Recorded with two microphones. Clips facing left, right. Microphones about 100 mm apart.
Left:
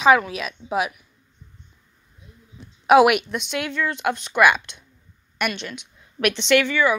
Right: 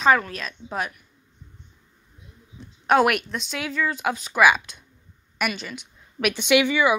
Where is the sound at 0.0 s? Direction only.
5° left (ahead or behind).